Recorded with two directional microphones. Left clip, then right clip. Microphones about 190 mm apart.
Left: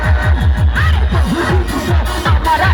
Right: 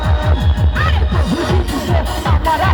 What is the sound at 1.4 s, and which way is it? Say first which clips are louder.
Music: left 2 dB; 40° left (ahead or behind).